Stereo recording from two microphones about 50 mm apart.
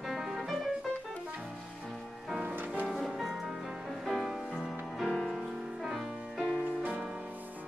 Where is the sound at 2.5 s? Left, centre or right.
Right.